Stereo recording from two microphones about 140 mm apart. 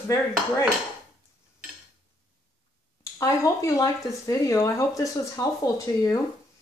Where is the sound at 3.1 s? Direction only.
25° left (ahead or behind).